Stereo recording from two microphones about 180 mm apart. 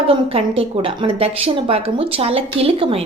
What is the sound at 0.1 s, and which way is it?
A woman's voice, 30° right (ahead or behind).